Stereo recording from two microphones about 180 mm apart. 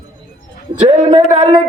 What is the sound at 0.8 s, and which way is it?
Speech, 30° right (ahead or behind).